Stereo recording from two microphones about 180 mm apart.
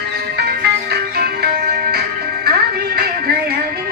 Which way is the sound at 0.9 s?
60° right (ahead or behind).